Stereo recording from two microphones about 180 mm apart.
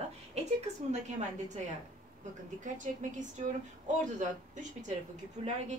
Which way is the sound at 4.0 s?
45° right (ahead or behind).